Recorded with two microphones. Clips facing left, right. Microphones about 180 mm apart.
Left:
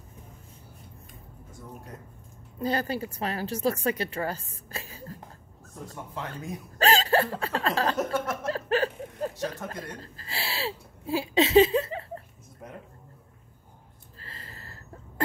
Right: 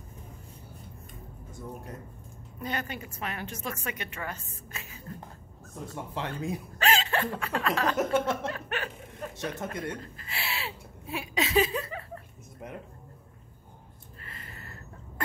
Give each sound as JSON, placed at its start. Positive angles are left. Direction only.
{"t": 2.6, "sound": "a woman's voice", "side_deg": 35}
{"t": 6.1, "sound": "speech", "side_deg": -30}
{"t": 6.8, "sound": "chuckle", "side_deg": 35}
{"t": 14.2, "sound": "a sound", "side_deg": 30}